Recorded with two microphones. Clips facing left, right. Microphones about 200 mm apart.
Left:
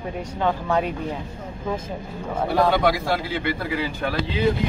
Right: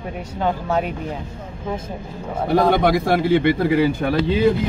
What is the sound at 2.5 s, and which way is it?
Speech, 50° right (ahead or behind).